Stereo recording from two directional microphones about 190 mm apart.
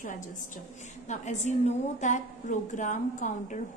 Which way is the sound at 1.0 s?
40° left (ahead or behind).